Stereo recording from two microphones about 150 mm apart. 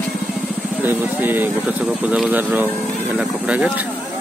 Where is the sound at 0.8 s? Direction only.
10° right (ahead or behind).